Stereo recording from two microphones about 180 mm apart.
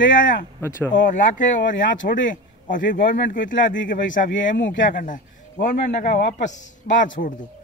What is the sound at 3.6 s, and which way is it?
Speech, 85° left.